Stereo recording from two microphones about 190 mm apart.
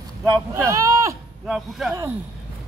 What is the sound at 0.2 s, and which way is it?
Speech, 15° right (ahead or behind).